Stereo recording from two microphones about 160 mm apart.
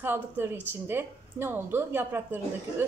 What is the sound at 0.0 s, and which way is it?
A woman's voice, 15° right (ahead or behind).